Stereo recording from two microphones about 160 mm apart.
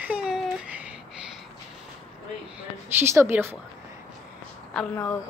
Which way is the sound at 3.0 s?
15° right (ahead or behind).